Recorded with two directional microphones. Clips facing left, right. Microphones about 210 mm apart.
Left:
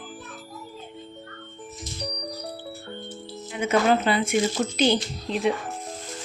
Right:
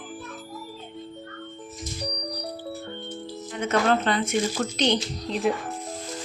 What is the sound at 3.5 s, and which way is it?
Speech, 10° left (ahead or behind).